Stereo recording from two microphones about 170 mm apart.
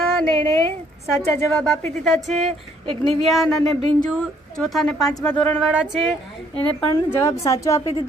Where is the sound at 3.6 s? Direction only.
35° right (ahead or behind).